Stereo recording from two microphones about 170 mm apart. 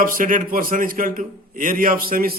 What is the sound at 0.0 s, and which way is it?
A man's voice, 55° right (ahead or behind).